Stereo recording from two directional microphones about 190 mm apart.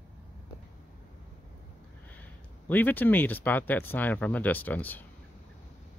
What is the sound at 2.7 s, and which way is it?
Speech, 10° left (ahead or behind).